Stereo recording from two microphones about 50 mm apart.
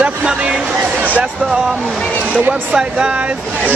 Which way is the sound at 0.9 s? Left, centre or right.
Right.